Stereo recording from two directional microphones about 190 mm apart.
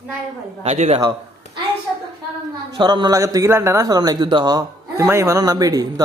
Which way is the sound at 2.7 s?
25° right (ahead or behind).